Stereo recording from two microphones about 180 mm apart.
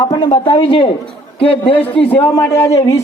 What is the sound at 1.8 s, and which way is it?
Speech, 10° left (ahead or behind).